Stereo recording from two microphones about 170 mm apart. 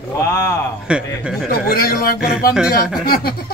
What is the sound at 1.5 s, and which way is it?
Speech, 60° left (ahead or behind).